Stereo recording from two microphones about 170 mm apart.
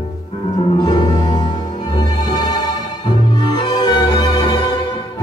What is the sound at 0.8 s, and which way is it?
Music, 25° left (ahead or behind).